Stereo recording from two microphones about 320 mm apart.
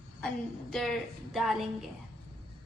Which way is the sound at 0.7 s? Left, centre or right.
Centre.